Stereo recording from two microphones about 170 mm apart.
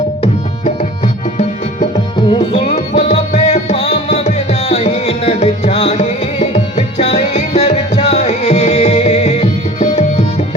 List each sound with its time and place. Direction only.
0.2 s tabla: 35° left (ahead or behind)
2.2 s music: 30° left (ahead or behind)